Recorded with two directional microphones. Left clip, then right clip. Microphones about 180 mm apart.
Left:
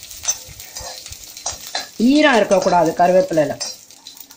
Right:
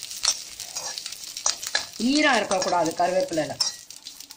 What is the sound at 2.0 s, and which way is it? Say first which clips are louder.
Speech: left 8 dB; 35° left (ahead or behind).